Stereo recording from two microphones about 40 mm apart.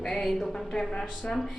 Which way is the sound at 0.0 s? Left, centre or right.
Centre.